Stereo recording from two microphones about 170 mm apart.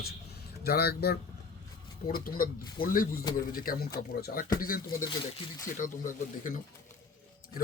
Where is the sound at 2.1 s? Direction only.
60° left (ahead or behind).